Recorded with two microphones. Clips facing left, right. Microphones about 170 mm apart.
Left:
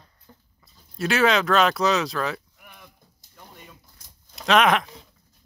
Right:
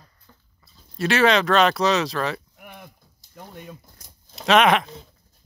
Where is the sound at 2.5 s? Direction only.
55° right (ahead or behind).